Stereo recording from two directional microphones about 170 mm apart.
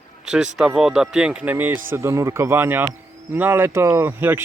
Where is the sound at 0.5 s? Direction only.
5° right (ahead or behind).